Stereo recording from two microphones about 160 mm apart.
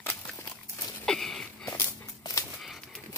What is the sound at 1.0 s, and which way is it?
Wheeze, 5° left (ahead or behind).